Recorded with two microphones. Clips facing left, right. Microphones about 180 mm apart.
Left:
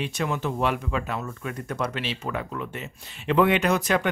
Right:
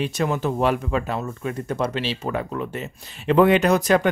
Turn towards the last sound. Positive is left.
turn(degrees=-40)  # may be behind; listen again after turning